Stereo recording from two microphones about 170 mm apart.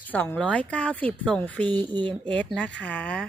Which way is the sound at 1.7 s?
25° right (ahead or behind).